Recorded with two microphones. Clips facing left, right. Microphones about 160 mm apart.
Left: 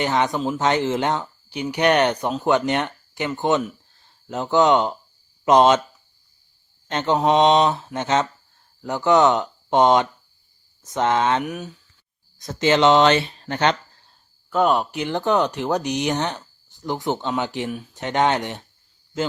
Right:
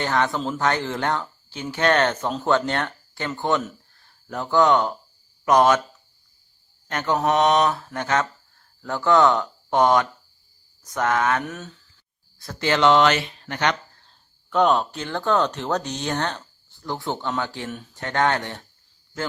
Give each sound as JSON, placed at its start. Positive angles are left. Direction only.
{"t": 0.0, "sound": "speech", "side_deg": 20}
{"t": 6.9, "sound": "speech", "side_deg": 20}
{"t": 11.4, "sound": "speech", "side_deg": 15}
{"t": 14.1, "sound": "speech", "side_deg": 5}